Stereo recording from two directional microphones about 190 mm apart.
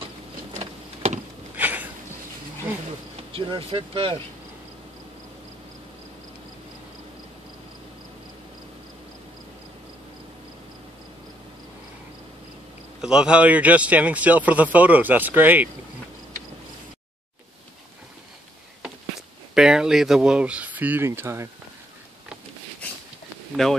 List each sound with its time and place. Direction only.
0.6 s vehicle: 35° right (ahead or behind)
1.6 s a sound: 10° right (ahead or behind)
3.2 s speech: 30° right (ahead or behind)
13.0 s speech: 5° right (ahead or behind)
18.8 s speech: 5° right (ahead or behind)
23.5 s speech: centre (ahead or behind)